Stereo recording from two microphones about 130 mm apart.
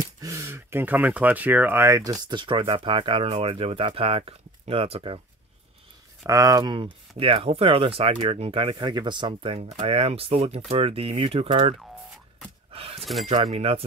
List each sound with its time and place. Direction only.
0.2 s speech: 25° right (ahead or behind); by 5.2 s 45° right (ahead or behind)
6.2 s speech: 25° right (ahead or behind); by 11.7 s 50° right (ahead or behind)
12.7 s a sound: 50° right (ahead or behind)
13.0 s speech: centre (ahead or behind)
13.3 s speech: 50° right (ahead or behind)